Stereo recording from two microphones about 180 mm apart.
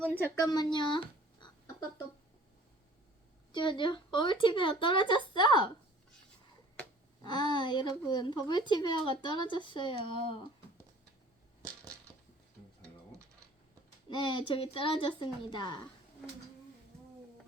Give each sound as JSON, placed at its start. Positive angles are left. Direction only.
{"t": 0.0, "sound": "speech", "side_deg": 10}
{"t": 3.5, "sound": "a woman's voice", "side_deg": 25}
{"t": 7.2, "sound": "a woman's voice", "side_deg": 25}
{"t": 14.1, "sound": "a woman's voice", "side_deg": 25}